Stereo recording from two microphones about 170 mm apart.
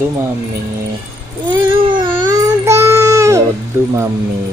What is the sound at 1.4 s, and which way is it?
Child singing, 25° right (ahead or behind).